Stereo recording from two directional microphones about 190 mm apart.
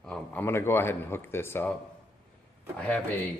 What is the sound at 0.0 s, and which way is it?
Speech, 5° left (ahead or behind).